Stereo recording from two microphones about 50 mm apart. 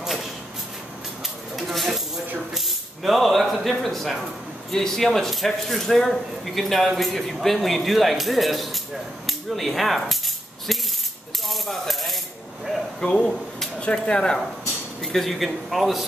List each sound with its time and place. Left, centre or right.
0.0 s a sound: centre
1.6 s a sound: centre
2.5 s spray: centre
3.8 s speech: centre
11.4 s coin: centre
13.0 s speech: centre
15.1 s speech: centre